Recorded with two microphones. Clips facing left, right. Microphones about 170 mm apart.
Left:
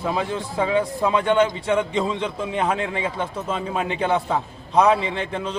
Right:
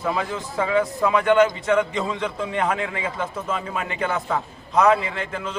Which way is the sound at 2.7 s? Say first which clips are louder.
Left 2 dB; 25° left (ahead or behind).